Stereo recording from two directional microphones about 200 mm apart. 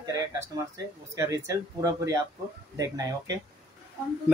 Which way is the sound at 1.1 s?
15° right (ahead or behind).